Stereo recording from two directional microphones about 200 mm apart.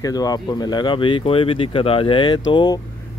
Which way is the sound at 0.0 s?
20° left (ahead or behind).